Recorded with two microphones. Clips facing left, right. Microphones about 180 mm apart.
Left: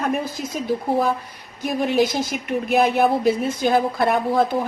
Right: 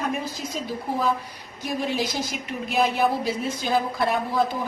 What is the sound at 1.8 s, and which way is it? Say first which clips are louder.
A woman's voice: left 8 dB; 60° left (ahead or behind).